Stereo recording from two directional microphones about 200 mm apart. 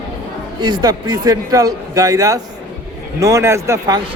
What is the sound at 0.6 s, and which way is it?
A man's voice, 20° right (ahead or behind).